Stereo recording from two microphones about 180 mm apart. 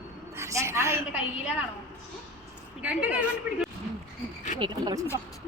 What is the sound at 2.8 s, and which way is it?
Speech, 10° right (ahead or behind).